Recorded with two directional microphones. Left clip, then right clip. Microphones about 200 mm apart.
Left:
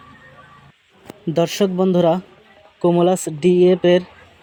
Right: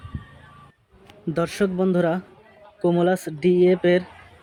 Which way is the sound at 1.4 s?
25° left (ahead or behind).